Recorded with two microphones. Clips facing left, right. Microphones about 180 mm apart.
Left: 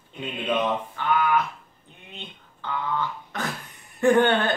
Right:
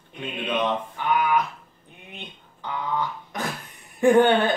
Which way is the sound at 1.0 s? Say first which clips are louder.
Even; 15° right (ahead or behind).